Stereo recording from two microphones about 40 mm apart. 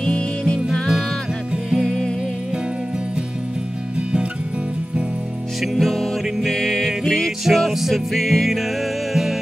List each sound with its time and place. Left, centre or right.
0.0 s music: left
1.8 s music: centre
5.6 s music: centre